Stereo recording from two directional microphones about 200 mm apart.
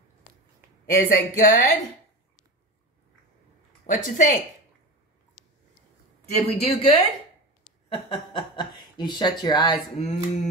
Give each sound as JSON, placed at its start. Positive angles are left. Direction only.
{"t": 0.8, "sound": "speech", "side_deg": 45}
{"t": 3.8, "sound": "speech", "side_deg": 40}
{"t": 5.4, "sound": "a sound", "side_deg": 0}
{"t": 6.3, "sound": "speech", "side_deg": 30}